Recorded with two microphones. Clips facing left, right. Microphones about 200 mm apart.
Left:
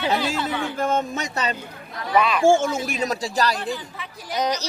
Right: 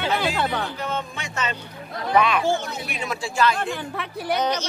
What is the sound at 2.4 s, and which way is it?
Speech, 50° left (ahead or behind).